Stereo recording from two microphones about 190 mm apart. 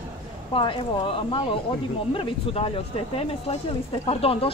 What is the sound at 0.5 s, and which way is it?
Speech, 25° left (ahead or behind).